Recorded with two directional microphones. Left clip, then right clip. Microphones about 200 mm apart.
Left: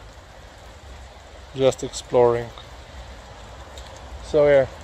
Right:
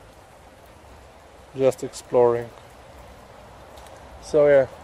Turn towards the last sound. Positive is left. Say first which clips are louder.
# even
turn(degrees=-15)  # may be behind; listen again after turning